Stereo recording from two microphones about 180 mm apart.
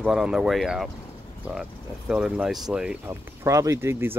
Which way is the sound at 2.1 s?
5° right (ahead or behind).